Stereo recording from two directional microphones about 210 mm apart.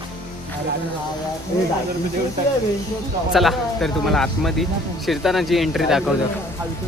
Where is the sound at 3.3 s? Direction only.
Centre (ahead or behind).